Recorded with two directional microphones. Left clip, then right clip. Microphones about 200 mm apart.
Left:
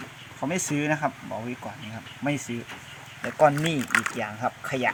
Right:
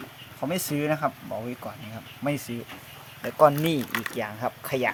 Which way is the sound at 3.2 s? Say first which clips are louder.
Right 1 dB; 10° right (ahead or behind).